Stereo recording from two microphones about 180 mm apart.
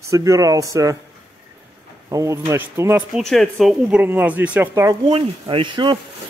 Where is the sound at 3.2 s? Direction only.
Centre (ahead or behind).